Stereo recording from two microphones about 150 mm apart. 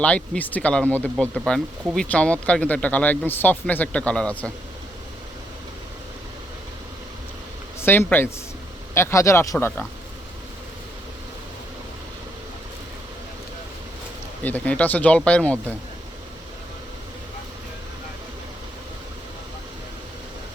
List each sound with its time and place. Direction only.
0.0 s speech: 10° left (ahead or behind)
7.8 s speech: 15° left (ahead or behind)
14.4 s speech: 10° left (ahead or behind)